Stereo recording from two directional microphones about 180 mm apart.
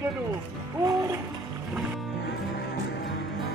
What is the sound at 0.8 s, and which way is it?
Music, 20° right (ahead or behind).